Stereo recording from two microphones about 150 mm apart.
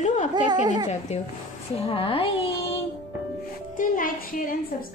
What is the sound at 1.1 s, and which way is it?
Speech, 45° left (ahead or behind).